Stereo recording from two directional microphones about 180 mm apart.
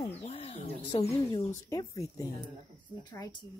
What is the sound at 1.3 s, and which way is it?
Speech, 20° left (ahead or behind).